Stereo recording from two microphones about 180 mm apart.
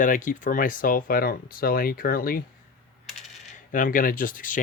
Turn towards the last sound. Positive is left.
turn(degrees=50)  # may be behind; listen again after turning